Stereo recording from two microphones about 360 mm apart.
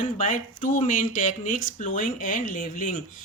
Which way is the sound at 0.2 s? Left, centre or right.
Left.